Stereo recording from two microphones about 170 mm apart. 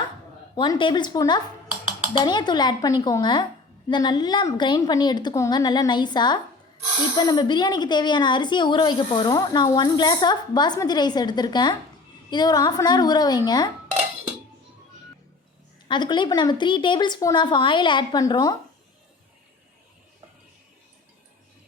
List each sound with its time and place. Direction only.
0.5 s a woman's voice: 25° left (ahead or behind)
15.9 s a woman's voice: 25° left (ahead or behind)